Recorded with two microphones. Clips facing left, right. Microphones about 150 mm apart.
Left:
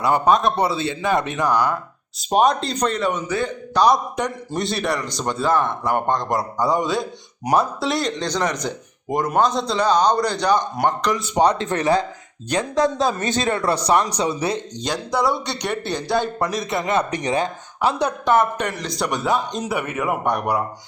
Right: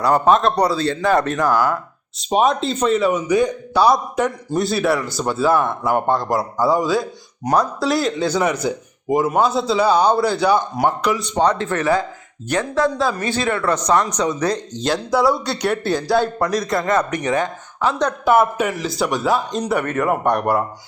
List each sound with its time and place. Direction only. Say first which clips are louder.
0.6 s speech: right 3 dB; 25° left (ahead or behind)
1.4 s a man's voice: right 2 dB; centre (ahead or behind)
11.3 s speech: left 1 dB; 15° left (ahead or behind)
14.1 s speech: right 2 dB; 30° left (ahead or behind)
14.8 s a man's voice: right 4 dB; 5° right (ahead or behind)
16.9 s speech: right 1 dB; 30° left (ahead or behind)
17.7 s speech: right 1 dB; 10° left (ahead or behind)
18.3 s a man's voice: right 3 dB; 5° right (ahead or behind)